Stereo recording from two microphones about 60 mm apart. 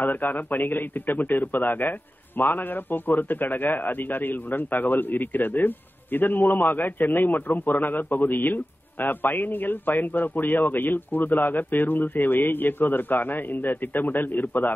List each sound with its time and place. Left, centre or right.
0.0 s a man's voice: left